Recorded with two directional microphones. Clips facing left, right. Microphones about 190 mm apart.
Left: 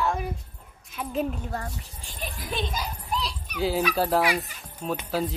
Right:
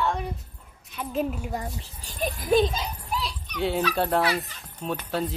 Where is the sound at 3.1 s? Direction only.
Centre (ahead or behind).